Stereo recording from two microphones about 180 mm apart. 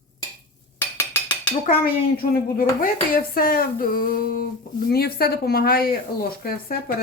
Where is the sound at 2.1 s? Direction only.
55° left (ahead or behind).